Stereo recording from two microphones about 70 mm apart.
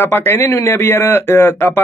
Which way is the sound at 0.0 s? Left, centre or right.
Left.